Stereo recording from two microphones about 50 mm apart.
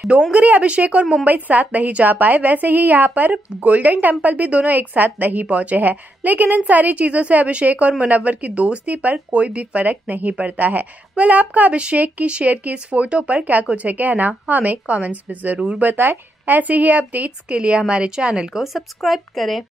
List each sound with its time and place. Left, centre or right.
0.3 s a woman's voice: right
17.5 s a woman's voice: centre